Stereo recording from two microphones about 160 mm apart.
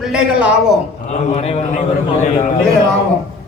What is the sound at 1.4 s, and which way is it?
A man's voice, 45° left (ahead or behind).